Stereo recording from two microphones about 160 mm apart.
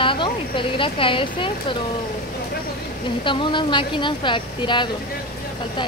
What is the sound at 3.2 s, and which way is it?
Speech, 30° left (ahead or behind).